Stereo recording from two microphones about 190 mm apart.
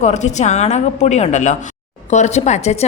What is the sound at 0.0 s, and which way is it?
A woman's voice, 40° left (ahead or behind).